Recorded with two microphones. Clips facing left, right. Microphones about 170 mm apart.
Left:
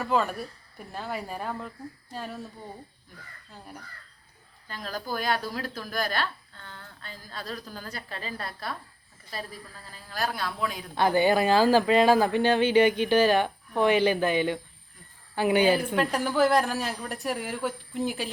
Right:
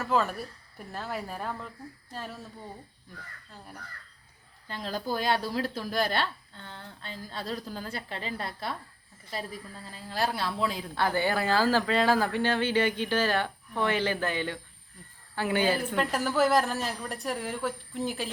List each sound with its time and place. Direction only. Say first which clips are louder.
0.0 s a woman's voice: left 1 dB; centre (ahead or behind)
4.7 s speech: right 1 dB; 25° right (ahead or behind)
10.9 s speech: left 7 dB; 15° left (ahead or behind)
16.0 s a woman's voice: left 2 dB; centre (ahead or behind)